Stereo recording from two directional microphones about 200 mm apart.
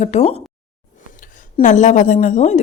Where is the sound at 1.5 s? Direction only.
35° left (ahead or behind).